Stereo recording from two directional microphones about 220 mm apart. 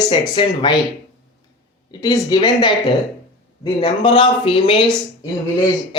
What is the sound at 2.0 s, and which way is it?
Speech, 20° left (ahead or behind).